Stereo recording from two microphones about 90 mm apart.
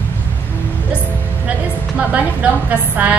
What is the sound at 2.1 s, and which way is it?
A woman's voice, 15° right (ahead or behind).